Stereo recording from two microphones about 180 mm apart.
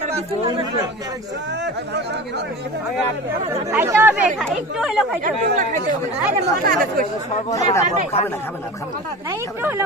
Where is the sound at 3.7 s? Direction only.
10° right (ahead or behind).